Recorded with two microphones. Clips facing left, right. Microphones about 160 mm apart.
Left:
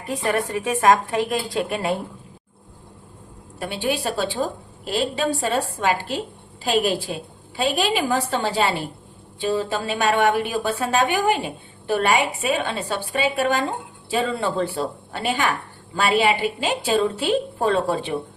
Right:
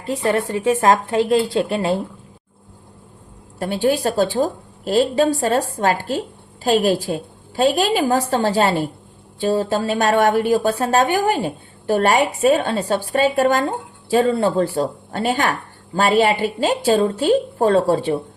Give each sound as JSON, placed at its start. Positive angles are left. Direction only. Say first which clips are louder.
{"t": 0.0, "sound": "a woman's voice", "louder": "right 4 dB", "side_deg": -25}
{"t": 3.6, "sound": "a woman's voice", "louder": "right 6 dB", "side_deg": -40}
{"t": 7.5, "sound": "a woman's voice", "louder": "right 5 dB", "side_deg": -40}